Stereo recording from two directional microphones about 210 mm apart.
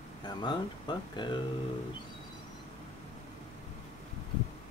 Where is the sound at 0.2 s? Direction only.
20° left (ahead or behind).